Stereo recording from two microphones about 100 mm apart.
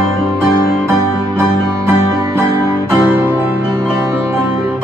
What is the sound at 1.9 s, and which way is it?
Music, 30° right (ahead or behind).